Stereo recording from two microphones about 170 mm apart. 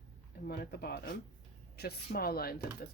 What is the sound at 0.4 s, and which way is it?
Speech, 70° left (ahead or behind).